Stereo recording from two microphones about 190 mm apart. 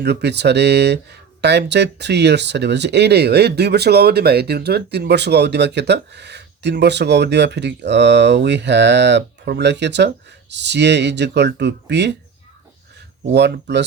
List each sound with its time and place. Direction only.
0.0 s speech: 60° right (ahead or behind)
13.3 s speech: 65° right (ahead or behind)